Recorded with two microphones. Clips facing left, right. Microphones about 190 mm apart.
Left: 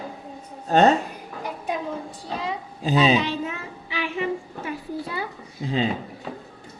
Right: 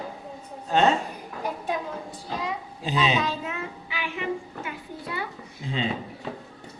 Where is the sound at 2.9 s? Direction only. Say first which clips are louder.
Left 6 dB; 35° left (ahead or behind).